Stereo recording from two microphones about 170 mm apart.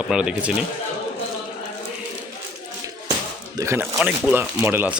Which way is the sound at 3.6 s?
15° right (ahead or behind).